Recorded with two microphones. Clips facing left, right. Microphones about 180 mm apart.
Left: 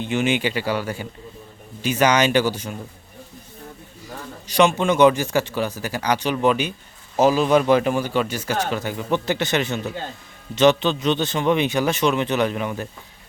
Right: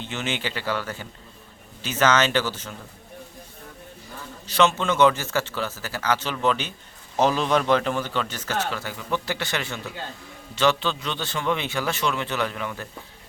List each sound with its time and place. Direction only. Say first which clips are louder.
0.0 s a man's voice: left 8 dB; 15° left (ahead or behind)
4.4 s a man's voice: left 4 dB; 15° left (ahead or behind)